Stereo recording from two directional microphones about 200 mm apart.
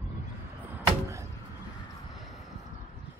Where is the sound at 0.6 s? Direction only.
15° right (ahead or behind).